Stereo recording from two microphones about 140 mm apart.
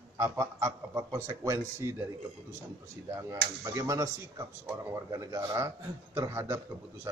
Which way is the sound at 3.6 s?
25° right (ahead or behind).